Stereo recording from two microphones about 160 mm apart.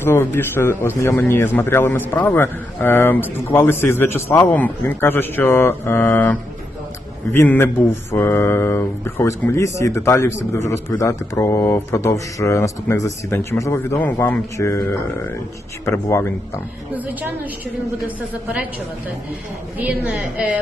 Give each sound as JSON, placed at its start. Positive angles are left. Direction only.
{"t": 0.0, "sound": "speech", "side_deg": 15}
{"t": 7.3, "sound": "speech", "side_deg": 10}
{"t": 15.9, "sound": "speech", "side_deg": 15}
{"t": 19.8, "sound": "a woman's voice", "side_deg": -10}